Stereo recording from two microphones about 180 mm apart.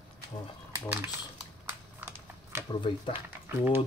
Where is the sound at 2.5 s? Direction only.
15° right (ahead or behind).